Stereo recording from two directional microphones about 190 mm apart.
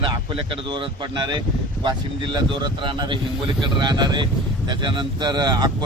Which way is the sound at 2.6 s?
25° right (ahead or behind).